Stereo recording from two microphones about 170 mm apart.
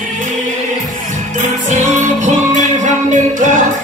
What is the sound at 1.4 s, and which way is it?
Music, 45° right (ahead or behind).